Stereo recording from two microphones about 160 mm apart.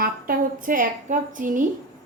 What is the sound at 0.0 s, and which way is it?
A woman's voice, 60° right (ahead or behind).